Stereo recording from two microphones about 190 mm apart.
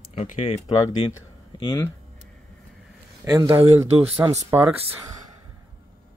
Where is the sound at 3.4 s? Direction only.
30° right (ahead or behind).